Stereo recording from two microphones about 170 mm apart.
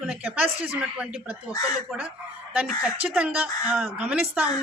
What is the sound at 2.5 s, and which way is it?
Speech, 5° right (ahead or behind).